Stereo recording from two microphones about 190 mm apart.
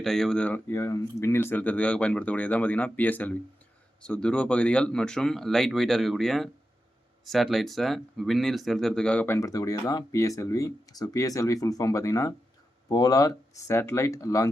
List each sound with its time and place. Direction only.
0.0 s speech: centre (ahead or behind)